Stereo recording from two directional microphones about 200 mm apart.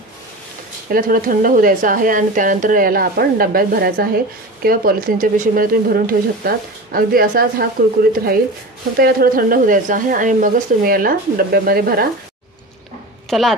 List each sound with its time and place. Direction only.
0.8 s speech: 45° right (ahead or behind)
8.9 s speech: 50° right (ahead or behind)
13.3 s a woman's voice: centre (ahead or behind)